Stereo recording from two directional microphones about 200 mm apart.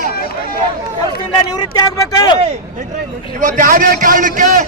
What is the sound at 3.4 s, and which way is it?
A man's voice, 40° right (ahead or behind).